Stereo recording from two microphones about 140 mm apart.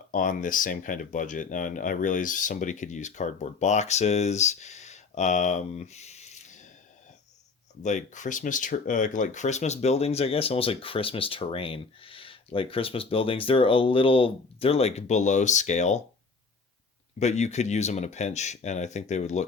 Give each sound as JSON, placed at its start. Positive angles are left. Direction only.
{"t": 0.1, "sound": "speech", "side_deg": 75}
{"t": 7.8, "sound": "speech", "side_deg": 60}
{"t": 17.2, "sound": "speech", "side_deg": 55}